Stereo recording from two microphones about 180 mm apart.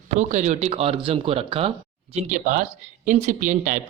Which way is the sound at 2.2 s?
45° right (ahead or behind).